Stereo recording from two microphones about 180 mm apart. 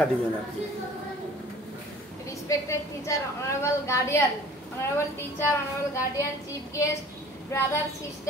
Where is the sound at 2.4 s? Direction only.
15° left (ahead or behind).